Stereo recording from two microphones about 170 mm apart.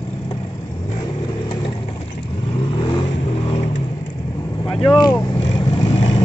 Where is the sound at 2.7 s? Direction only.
30° left (ahead or behind).